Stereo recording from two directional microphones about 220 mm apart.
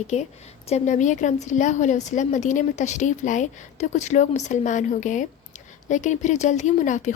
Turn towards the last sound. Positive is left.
turn(degrees=35)  # may be behind; listen again after turning